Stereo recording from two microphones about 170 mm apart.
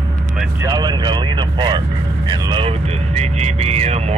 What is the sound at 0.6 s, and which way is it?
Speech, 20° right (ahead or behind).